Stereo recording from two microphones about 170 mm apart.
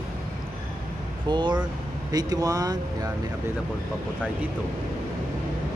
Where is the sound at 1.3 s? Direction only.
25° right (ahead or behind).